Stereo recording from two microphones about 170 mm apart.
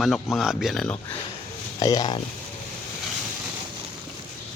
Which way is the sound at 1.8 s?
20° left (ahead or behind).